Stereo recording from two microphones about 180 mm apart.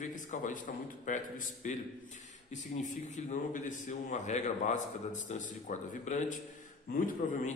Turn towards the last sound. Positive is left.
turn(degrees=50)  # may be behind; listen again after turning